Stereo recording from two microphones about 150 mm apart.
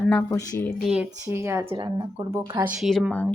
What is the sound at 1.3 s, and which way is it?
Speech, 20° right (ahead or behind).